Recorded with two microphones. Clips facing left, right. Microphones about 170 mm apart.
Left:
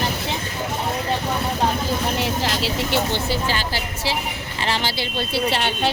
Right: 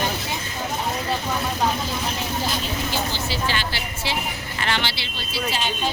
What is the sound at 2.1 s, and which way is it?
Speech, 80° left.